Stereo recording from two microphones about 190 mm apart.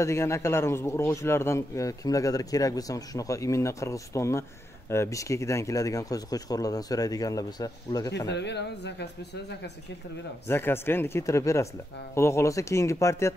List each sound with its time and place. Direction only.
0.0 s speech: 15° left (ahead or behind)
8.3 s speech: 65° left (ahead or behind)
10.4 s speech: 10° left (ahead or behind)